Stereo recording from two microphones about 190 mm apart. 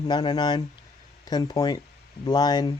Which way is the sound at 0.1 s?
25° left (ahead or behind).